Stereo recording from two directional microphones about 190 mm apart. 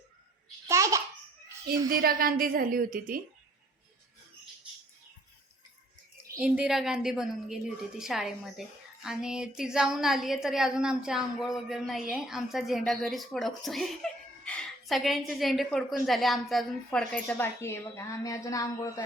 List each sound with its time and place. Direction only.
0.7 s babbling: 15° right (ahead or behind)
1.9 s a woman's voice: 50° right (ahead or behind)
6.4 s a woman's voice: 5° right (ahead or behind); by 19.0 s 15° left (ahead or behind)